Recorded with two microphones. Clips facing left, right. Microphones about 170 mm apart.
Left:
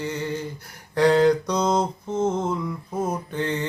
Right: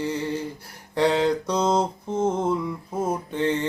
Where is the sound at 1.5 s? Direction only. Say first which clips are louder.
Even; 5° right (ahead or behind).